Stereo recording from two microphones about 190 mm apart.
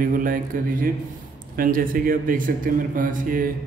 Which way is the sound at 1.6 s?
50° right (ahead or behind).